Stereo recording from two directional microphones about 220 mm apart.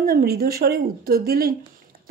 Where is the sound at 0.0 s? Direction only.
45° right (ahead or behind).